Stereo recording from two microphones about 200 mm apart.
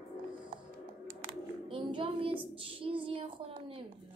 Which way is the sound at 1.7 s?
25° right (ahead or behind).